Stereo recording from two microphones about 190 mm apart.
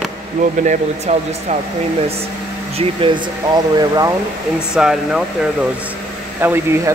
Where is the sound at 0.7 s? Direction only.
35° right (ahead or behind).